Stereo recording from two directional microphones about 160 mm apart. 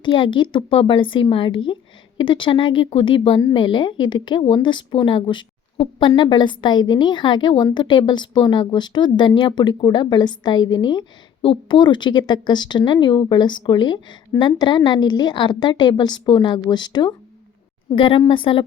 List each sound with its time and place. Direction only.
0.0 s a woman's voice: 30° left (ahead or behind)